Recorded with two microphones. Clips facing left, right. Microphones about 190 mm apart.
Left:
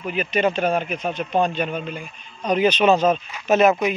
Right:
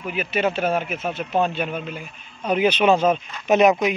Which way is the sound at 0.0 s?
5° right (ahead or behind).